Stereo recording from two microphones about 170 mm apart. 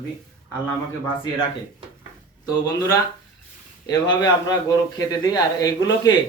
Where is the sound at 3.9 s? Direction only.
20° left (ahead or behind).